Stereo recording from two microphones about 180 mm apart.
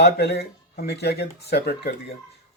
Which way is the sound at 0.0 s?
65° left (ahead or behind).